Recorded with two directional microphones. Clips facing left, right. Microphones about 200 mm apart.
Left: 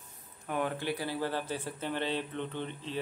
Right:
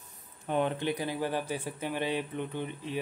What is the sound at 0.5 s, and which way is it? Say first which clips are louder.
Speech: right 3 dB; 25° right (ahead or behind).